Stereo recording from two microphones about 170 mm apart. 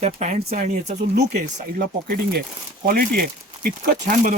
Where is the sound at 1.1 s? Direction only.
60° right (ahead or behind).